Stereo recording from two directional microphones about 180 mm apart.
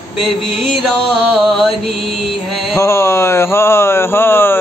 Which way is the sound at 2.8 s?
15° left (ahead or behind).